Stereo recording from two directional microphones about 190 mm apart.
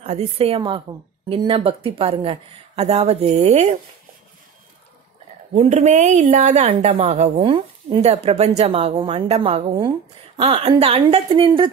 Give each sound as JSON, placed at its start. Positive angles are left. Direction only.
{"t": 0.0, "sound": "a woman's voice", "side_deg": -35}
{"t": 5.5, "sound": "a woman's voice", "side_deg": -35}